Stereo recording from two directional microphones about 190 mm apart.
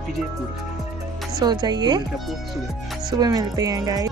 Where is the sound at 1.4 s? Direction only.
20° right (ahead or behind).